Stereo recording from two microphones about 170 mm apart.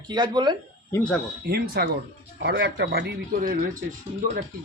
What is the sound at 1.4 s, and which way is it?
Speech, 65° right (ahead or behind).